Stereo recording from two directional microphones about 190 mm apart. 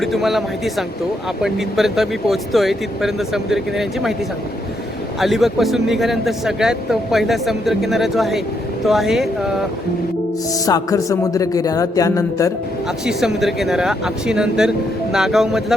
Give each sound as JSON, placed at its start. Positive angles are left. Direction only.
{"t": 0.0, "sound": "a man's voice", "side_deg": 0}
{"t": 5.2, "sound": "a man's voice", "side_deg": 0}
{"t": 10.7, "sound": "a man's voice", "side_deg": 20}
{"t": 13.1, "sound": "a man's voice", "side_deg": 0}